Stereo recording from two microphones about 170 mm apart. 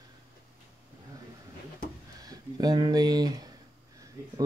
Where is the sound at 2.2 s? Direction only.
20° right (ahead or behind).